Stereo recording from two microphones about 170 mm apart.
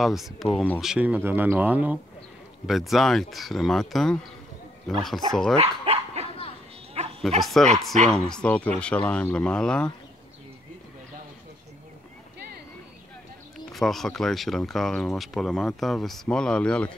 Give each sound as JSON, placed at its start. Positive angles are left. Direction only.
{"t": 0.0, "sound": "speech", "side_deg": 0}
{"t": 5.6, "sound": "dog", "side_deg": -35}
{"t": 7.3, "sound": "speech", "side_deg": 0}
{"t": 13.7, "sound": "speech", "side_deg": 0}